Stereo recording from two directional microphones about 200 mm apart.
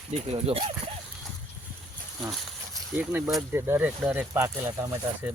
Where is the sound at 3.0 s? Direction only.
5° right (ahead or behind).